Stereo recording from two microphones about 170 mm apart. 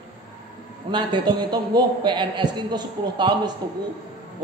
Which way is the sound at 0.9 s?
25° right (ahead or behind).